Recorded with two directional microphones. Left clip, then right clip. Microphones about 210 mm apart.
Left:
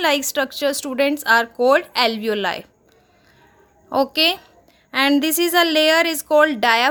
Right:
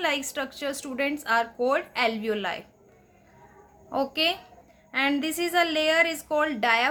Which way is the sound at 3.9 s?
45° left (ahead or behind).